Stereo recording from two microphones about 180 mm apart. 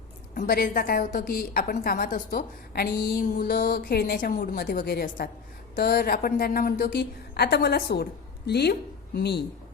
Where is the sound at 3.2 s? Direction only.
50° left (ahead or behind).